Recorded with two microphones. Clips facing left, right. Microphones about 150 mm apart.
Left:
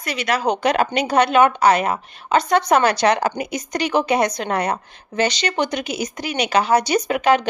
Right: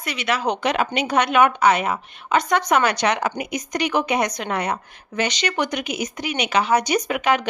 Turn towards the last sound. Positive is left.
turn(degrees=35)  # may be behind; listen again after turning